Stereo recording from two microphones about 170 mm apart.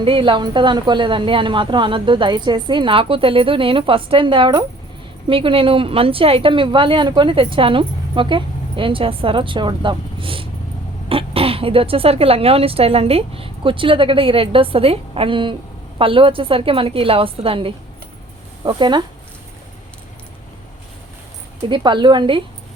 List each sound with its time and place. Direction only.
0.0 s a woman's voice: 30° right (ahead or behind)
21.7 s a woman's voice: 25° right (ahead or behind)